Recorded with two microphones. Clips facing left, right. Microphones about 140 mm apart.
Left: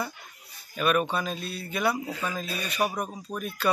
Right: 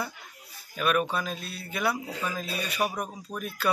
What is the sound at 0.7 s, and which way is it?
Speech, centre (ahead or behind).